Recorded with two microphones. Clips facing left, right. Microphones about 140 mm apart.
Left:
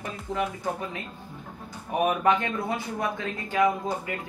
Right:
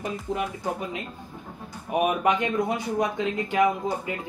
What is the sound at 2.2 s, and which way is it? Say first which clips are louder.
Speech: right 1 dB; 15° right (ahead or behind).